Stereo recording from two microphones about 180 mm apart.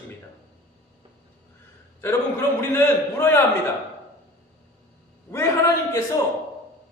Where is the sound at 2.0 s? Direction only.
15° left (ahead or behind).